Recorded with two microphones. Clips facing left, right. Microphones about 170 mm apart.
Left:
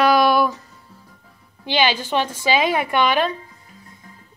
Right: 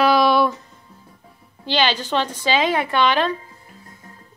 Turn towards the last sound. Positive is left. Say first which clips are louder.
# even
turn(degrees=10)  # may be behind; listen again after turning